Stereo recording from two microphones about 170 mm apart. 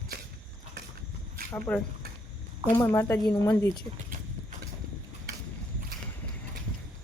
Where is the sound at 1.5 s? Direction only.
10° left (ahead or behind).